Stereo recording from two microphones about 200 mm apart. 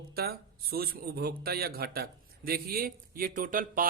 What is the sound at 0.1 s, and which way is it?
A man's voice, 50° right (ahead or behind).